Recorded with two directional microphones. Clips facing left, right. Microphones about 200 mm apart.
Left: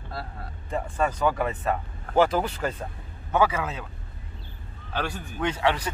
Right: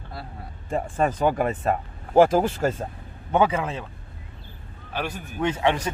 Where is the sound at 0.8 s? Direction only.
50° right (ahead or behind).